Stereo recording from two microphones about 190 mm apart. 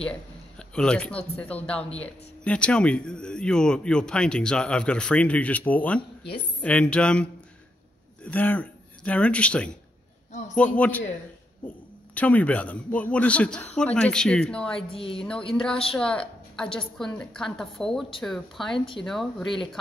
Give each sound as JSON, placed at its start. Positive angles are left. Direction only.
{"t": 0.6, "sound": "speech", "side_deg": 5}
{"t": 10.8, "sound": "a man's voice", "side_deg": 10}
{"t": 14.8, "sound": "a woman's voice", "side_deg": 30}
{"t": 15.5, "sound": "a woman's voice", "side_deg": 5}